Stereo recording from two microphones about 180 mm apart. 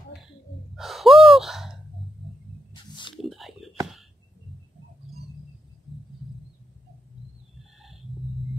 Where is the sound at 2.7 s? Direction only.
25° left (ahead or behind).